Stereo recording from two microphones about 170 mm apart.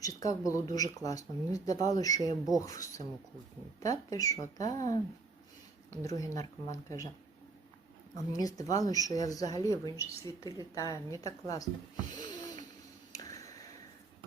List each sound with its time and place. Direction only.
0.0 s a woman's voice: 20° left (ahead or behind)
8.1 s a woman's voice: 20° left (ahead or behind)
12.1 s a sound: 25° left (ahead or behind)